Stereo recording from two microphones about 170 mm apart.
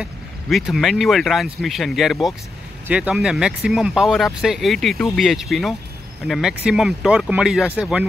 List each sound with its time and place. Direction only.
0.0 s speech: centre (ahead or behind)